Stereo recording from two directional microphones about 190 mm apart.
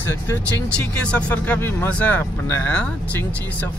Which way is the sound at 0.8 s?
5° left (ahead or behind).